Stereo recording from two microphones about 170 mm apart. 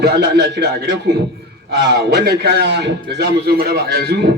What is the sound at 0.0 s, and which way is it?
A man's voice, 75° right (ahead or behind).